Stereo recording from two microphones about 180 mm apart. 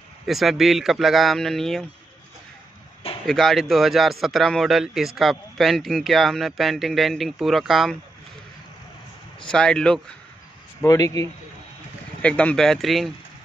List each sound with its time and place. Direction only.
0.3 s a man's voice: centre (ahead or behind)
3.3 s a man's voice: centre (ahead or behind)
9.4 s a man's voice: 5° left (ahead or behind)
10.8 s speech: 20° left (ahead or behind)
12.2 s a man's voice: 5° left (ahead or behind)